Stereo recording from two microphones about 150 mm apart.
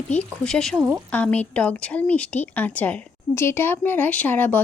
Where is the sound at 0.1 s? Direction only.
5° left (ahead or behind).